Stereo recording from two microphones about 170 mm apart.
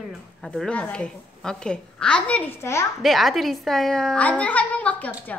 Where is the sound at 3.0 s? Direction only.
Centre (ahead or behind).